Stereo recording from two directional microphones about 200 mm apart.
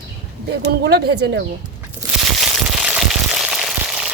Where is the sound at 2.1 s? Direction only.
5° right (ahead or behind).